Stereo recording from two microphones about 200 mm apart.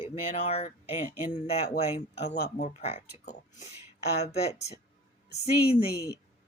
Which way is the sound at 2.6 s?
30° left (ahead or behind).